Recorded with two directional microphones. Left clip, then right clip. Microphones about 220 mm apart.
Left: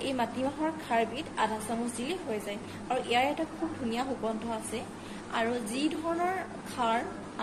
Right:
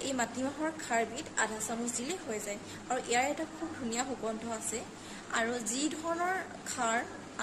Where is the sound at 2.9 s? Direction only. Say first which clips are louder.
Left 3 dB; 20° right (ahead or behind).